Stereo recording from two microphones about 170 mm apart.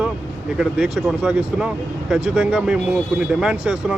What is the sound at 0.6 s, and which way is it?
Speech, 5° right (ahead or behind).